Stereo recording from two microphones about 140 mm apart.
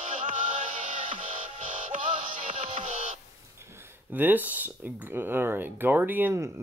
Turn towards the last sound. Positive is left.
turn(degrees=-15)  # may be behind; listen again after turning